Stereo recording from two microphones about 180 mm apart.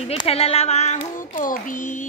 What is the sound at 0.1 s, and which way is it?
Speech, 35° left (ahead or behind).